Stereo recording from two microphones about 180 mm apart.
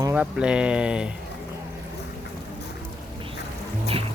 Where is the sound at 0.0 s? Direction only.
10° right (ahead or behind).